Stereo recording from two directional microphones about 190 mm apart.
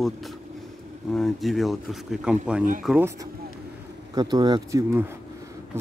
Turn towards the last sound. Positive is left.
turn(degrees=-20)  # may be behind; listen again after turning